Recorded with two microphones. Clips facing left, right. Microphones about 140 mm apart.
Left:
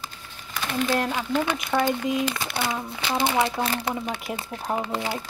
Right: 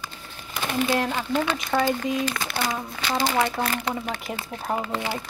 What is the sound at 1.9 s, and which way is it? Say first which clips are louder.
Speech: even; centre (ahead or behind).